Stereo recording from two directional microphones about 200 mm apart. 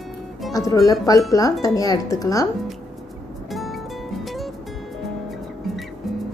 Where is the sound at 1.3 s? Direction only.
15° left (ahead or behind).